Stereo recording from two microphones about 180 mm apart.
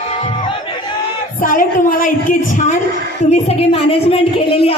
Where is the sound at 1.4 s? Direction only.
50° left (ahead or behind).